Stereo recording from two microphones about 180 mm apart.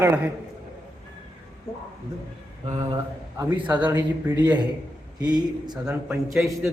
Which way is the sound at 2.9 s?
15° right (ahead or behind).